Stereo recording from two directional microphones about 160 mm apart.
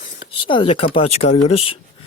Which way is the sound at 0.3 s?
35° left (ahead or behind).